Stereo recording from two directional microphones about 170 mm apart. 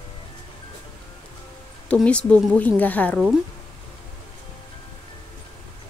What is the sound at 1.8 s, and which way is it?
A woman's voice, 5° left (ahead or behind).